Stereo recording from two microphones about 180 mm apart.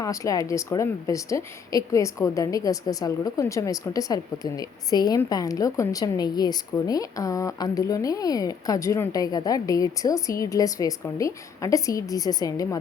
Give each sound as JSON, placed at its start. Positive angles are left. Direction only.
{"t": 0.0, "sound": "a woman's voice", "side_deg": 20}